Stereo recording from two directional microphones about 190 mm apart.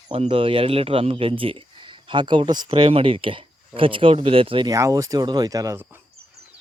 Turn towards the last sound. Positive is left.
turn(degrees=-15)  # may be behind; listen again after turning